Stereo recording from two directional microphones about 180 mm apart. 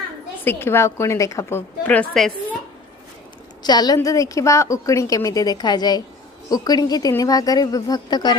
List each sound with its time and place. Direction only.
0.4 s a woman's voice: 15° left (ahead or behind)
3.6 s a woman's voice: 25° left (ahead or behind)